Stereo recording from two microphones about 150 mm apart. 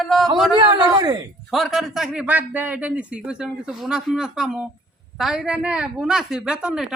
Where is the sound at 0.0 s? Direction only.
Centre (ahead or behind).